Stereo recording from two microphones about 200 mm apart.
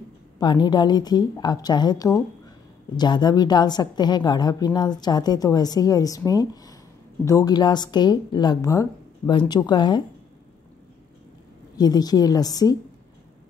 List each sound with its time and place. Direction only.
0.4 s a woman's voice: 20° left (ahead or behind)
11.7 s a woman's voice: 20° left (ahead or behind)